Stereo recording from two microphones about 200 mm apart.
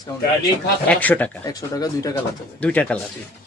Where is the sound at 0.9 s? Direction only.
5° left (ahead or behind).